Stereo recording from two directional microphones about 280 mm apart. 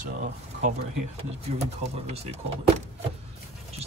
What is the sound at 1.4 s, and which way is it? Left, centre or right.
Speech, right.